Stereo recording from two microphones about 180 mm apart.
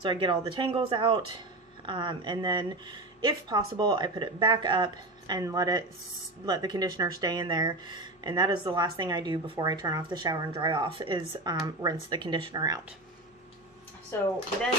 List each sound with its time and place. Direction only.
0.0 s speech: 30° right (ahead or behind)
14.1 s speech: 15° left (ahead or behind)